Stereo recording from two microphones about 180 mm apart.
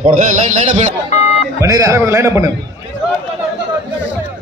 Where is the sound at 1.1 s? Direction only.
35° left (ahead or behind).